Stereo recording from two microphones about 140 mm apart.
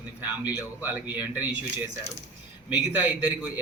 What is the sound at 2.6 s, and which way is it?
Speech, 10° right (ahead or behind).